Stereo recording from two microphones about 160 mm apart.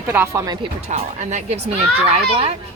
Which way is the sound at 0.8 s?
45° right (ahead or behind).